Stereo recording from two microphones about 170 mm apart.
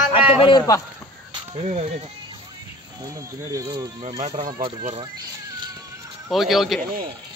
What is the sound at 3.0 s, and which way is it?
Speech, 20° right (ahead or behind).